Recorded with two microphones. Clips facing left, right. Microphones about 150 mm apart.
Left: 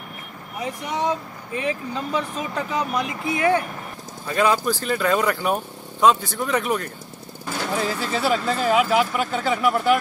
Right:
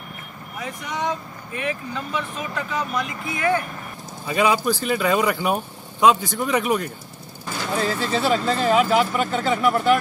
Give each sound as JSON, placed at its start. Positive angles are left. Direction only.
{"t": 1.5, "sound": "speech", "side_deg": 25}
{"t": 4.3, "sound": "speech", "side_deg": -5}
{"t": 7.7, "sound": "speech", "side_deg": 10}